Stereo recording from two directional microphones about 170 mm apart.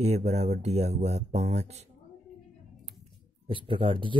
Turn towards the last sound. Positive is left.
turn(degrees=-30)  # may be behind; listen again after turning